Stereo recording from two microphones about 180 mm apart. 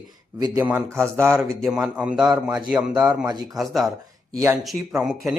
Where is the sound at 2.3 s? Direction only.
25° right (ahead or behind).